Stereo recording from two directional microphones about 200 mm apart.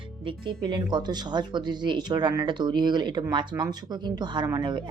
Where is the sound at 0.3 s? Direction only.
25° right (ahead or behind).